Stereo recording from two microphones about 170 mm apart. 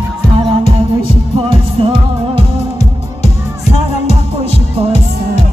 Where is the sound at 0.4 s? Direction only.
30° right (ahead or behind).